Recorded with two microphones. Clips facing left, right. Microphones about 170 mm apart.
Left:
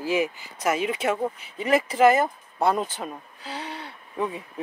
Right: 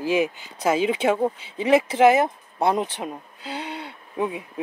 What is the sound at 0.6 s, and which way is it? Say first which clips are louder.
Speech: right 4 dB; 30° right (ahead or behind).